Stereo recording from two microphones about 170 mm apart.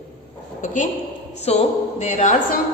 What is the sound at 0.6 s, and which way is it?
A woman's voice, 50° left (ahead or behind).